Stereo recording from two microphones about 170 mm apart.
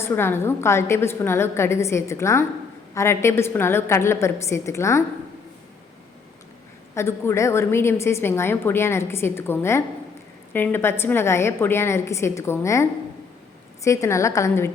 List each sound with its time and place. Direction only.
0.0 s a woman's voice: 15° left (ahead or behind)
6.9 s a woman's voice: 15° left (ahead or behind)